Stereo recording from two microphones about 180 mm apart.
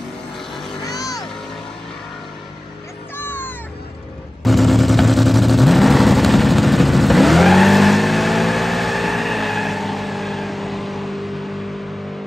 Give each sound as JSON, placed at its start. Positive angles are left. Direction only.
{"t": 0.8, "sound": "music", "side_deg": 20}
{"t": 3.2, "sound": "music", "side_deg": 10}
{"t": 4.4, "sound": "vehicle", "side_deg": 0}